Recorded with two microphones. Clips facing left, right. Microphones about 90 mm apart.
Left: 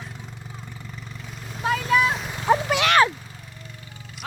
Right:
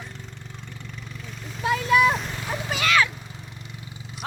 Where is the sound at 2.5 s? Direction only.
65° left (ahead or behind).